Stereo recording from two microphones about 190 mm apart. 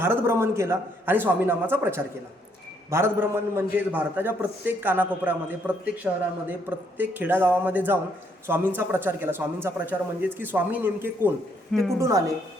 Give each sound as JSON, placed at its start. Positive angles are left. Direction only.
{"t": 0.0, "sound": "a man's voice", "side_deg": -10}
{"t": 11.7, "sound": "a woman's voice", "side_deg": 0}
{"t": 11.9, "sound": "a man's voice", "side_deg": -15}